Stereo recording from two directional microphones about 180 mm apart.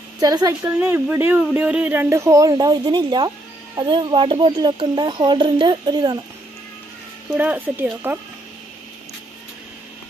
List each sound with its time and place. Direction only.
0.2 s speech: 20° right (ahead or behind)
0.7 s speech: 10° right (ahead or behind)
7.2 s speech: 10° right (ahead or behind)